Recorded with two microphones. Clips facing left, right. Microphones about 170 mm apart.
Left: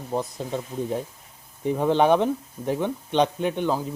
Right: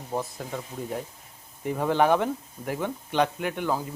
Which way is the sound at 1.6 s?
20° left (ahead or behind).